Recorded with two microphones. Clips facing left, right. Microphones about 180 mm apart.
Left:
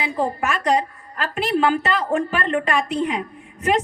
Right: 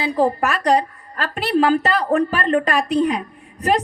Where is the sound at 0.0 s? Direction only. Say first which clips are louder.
Right 5 dB; 35° right (ahead or behind).